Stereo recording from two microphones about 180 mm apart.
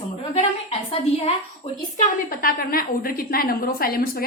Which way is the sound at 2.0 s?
55° left (ahead or behind).